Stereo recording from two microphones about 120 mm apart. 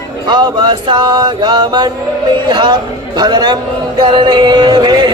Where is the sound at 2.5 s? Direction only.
40° right (ahead or behind).